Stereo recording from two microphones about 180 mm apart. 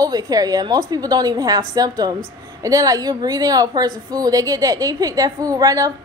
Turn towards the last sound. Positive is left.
turn(degrees=-20)  # may be behind; listen again after turning